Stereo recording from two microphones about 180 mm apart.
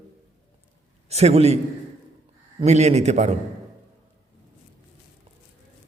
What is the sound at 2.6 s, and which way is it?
Speech, 40° right (ahead or behind).